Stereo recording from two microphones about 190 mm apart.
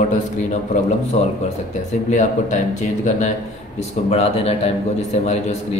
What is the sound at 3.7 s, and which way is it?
A man's voice, 35° left (ahead or behind).